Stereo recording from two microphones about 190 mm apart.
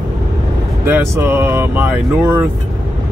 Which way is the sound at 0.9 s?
10° right (ahead or behind).